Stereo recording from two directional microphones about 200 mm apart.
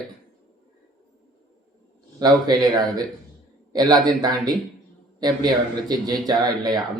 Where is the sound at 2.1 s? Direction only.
20° right (ahead or behind).